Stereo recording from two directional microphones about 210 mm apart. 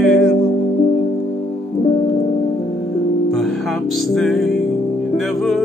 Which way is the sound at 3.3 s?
Centre (ahead or behind).